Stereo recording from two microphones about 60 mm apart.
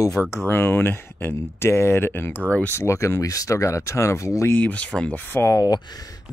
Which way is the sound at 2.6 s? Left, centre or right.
Left.